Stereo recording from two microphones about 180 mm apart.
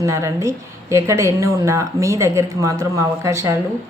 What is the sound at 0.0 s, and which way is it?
A woman's voice, 15° right (ahead or behind).